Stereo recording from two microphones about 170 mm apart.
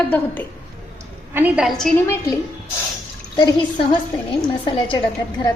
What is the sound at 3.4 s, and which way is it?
A woman's voice, 30° left (ahead or behind).